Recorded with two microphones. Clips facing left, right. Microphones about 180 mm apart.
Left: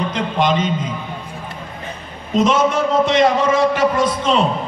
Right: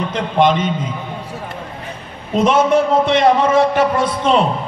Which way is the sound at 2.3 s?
55° right (ahead or behind).